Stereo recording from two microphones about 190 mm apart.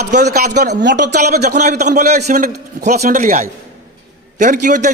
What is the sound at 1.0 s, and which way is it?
A man's voice, 45° right (ahead or behind).